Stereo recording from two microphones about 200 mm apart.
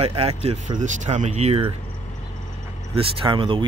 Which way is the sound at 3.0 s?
25° right (ahead or behind).